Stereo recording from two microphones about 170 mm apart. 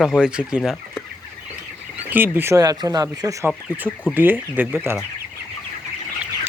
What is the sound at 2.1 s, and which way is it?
Speech, 10° right (ahead or behind).